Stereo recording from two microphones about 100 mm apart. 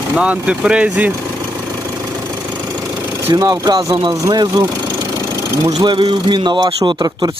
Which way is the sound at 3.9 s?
55° right (ahead or behind).